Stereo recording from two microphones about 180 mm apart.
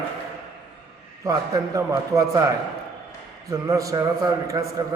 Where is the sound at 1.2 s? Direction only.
20° right (ahead or behind).